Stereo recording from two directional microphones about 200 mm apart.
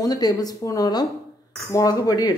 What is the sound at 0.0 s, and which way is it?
Speech, 20° left (ahead or behind).